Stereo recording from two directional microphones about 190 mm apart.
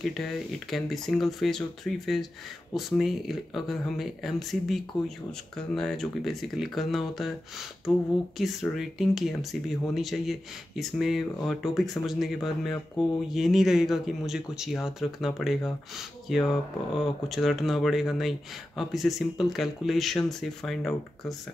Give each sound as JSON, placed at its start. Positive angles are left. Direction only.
{"t": 0.0, "sound": "speech", "side_deg": 0}